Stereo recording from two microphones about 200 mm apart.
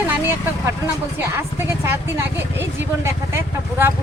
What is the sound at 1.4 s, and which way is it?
Speech, 15° right (ahead or behind).